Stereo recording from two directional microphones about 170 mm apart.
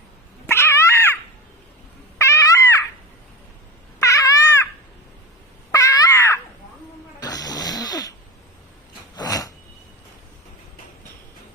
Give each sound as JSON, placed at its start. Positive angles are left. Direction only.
{"t": 0.4, "sound": "dog", "side_deg": 15}
{"t": 2.1, "sound": "cat", "side_deg": 20}
{"t": 4.0, "sound": "cat", "side_deg": 20}
{"t": 5.7, "sound": "a sound", "side_deg": 20}
{"t": 7.2, "sound": "snoring", "side_deg": 20}
{"t": 9.1, "sound": "a sound", "side_deg": 20}